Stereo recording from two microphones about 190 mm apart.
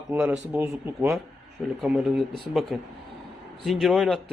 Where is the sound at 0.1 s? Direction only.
10° right (ahead or behind).